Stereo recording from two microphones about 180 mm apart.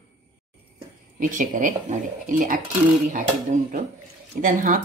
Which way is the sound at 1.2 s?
45° right (ahead or behind).